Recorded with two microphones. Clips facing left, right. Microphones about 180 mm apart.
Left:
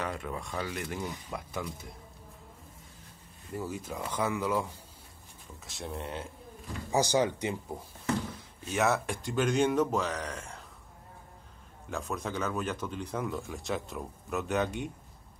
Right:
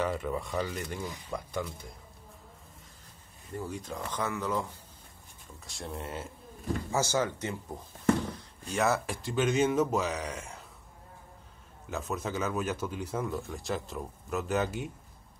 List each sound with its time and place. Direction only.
0.0 s speech: centre (ahead or behind)
3.5 s speech: 5° left (ahead or behind)
5.7 s speech: centre (ahead or behind)
6.9 s speech: 15° left (ahead or behind)
8.6 s speech: centre (ahead or behind)
11.9 s speech: centre (ahead or behind)